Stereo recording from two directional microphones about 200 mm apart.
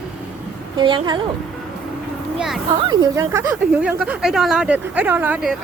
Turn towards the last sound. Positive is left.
turn(degrees=-5)  # may be behind; listen again after turning